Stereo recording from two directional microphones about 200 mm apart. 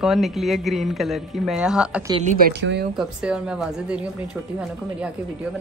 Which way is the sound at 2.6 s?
60° right (ahead or behind).